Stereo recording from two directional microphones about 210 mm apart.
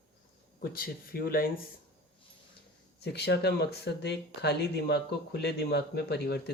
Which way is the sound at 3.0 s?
50° left (ahead or behind).